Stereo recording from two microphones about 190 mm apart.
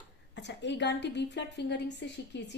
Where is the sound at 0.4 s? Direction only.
65° left (ahead or behind).